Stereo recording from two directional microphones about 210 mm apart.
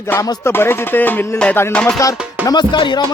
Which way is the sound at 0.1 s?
15° left (ahead or behind).